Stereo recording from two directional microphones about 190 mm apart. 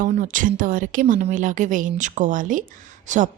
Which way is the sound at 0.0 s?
45° right (ahead or behind).